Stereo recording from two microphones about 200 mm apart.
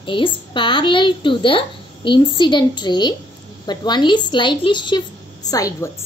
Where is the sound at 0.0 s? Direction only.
25° left (ahead or behind).